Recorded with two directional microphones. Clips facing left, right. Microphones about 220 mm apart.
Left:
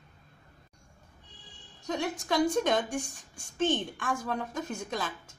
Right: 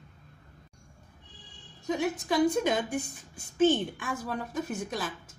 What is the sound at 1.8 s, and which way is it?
A woman's voice, 5° right (ahead or behind).